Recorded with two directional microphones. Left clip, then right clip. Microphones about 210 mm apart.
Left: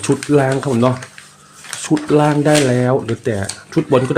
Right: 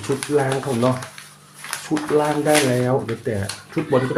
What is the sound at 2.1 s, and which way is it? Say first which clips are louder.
Speech: left 4 dB; 50° left (ahead or behind).